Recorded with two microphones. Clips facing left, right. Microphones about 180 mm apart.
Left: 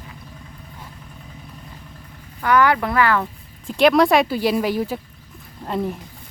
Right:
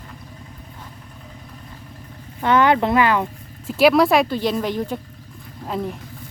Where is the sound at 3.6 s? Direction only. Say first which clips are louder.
Even; 5° right (ahead or behind).